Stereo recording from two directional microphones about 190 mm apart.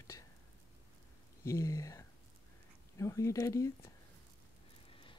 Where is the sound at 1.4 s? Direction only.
15° left (ahead or behind).